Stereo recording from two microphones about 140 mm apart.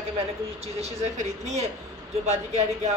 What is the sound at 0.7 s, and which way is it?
A woman's voice, 55° right (ahead or behind).